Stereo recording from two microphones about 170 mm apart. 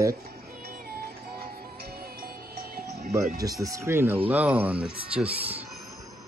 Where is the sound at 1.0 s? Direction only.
65° right (ahead or behind).